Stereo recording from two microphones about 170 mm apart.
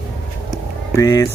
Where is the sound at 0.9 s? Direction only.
15° left (ahead or behind).